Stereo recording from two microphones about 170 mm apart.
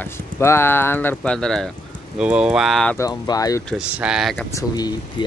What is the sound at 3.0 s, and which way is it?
Speech, 20° left (ahead or behind).